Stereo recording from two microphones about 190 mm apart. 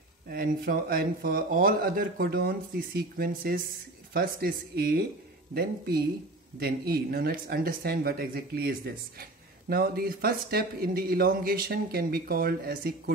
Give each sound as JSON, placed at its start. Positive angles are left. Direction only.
{"t": 0.3, "sound": "speech", "side_deg": -50}